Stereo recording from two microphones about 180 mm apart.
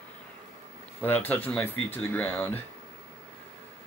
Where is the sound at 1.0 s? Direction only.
10° left (ahead or behind).